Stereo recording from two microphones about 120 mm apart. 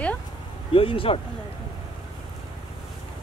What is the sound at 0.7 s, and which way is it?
Speech, 50° left (ahead or behind).